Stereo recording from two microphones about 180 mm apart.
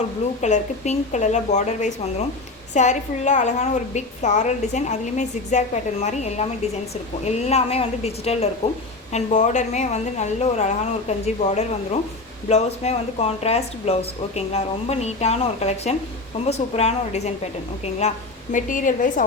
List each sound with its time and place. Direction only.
0.4 s a woman's voice: 40° left (ahead or behind)
18.5 s a woman's voice: 45° left (ahead or behind)